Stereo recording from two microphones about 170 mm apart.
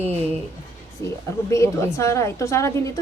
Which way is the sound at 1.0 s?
15° left (ahead or behind).